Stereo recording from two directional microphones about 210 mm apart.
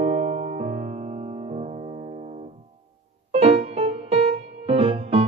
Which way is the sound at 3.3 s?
25° right (ahead or behind).